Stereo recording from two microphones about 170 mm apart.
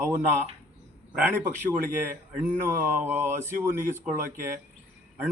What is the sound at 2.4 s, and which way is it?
A man's voice, 15° right (ahead or behind).